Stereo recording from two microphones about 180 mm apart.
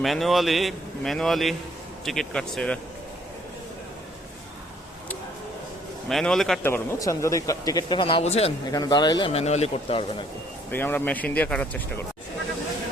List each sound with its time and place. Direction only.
0.0 s a man's voice: centre (ahead or behind)
6.1 s a man's voice: centre (ahead or behind)
6.7 s speech: 15° left (ahead or behind); by 8.5 s 35° left (ahead or behind)
8.7 s speech: 20° left (ahead or behind)
10.7 s speech: 10° left (ahead or behind)